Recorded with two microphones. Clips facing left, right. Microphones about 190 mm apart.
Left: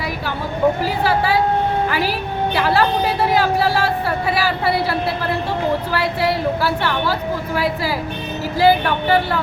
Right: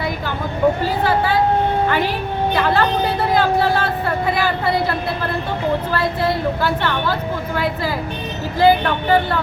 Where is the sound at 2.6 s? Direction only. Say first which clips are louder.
Left 1 dB; 10° left (ahead or behind).